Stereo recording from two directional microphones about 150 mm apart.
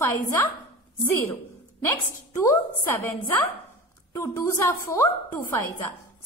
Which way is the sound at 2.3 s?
20° left (ahead or behind).